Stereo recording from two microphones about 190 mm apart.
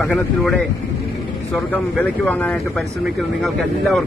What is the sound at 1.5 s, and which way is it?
A man's voice, 5° left (ahead or behind).